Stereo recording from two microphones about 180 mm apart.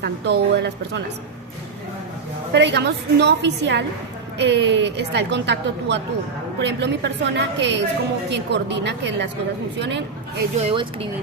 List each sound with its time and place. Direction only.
0.0 s a woman's voice: 65° right (ahead or behind)
2.5 s a woman's voice: 70° right (ahead or behind)
10.6 s speech: 30° right (ahead or behind)